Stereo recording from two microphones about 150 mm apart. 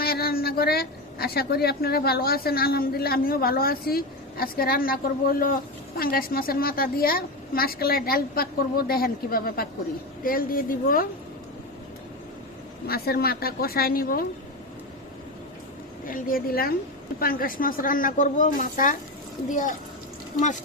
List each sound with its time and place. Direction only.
0.0 s a woman's voice: 90° left; by 11.1 s 70° left (ahead or behind)
12.9 s a woman's voice: 90° left
16.0 s a woman's voice: 70° left (ahead or behind)